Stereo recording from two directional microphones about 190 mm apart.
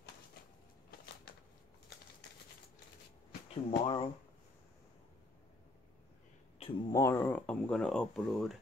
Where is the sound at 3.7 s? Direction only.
30° left (ahead or behind).